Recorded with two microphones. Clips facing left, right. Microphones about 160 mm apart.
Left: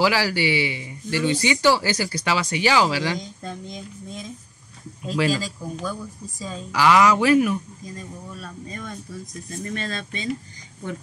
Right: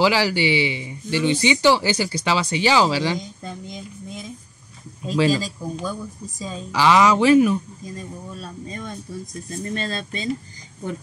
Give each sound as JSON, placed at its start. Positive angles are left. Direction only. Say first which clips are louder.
{"t": 0.0, "sound": "speech", "louder": "right 2 dB", "side_deg": -25}
{"t": 5.0, "sound": "speech", "louder": "right 3 dB", "side_deg": -25}